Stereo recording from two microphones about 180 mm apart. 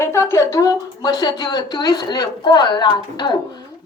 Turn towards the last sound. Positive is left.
turn(degrees=25)  # may be behind; listen again after turning